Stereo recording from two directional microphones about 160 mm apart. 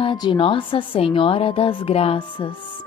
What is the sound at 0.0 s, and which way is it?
A woman's voice, 30° left (ahead or behind).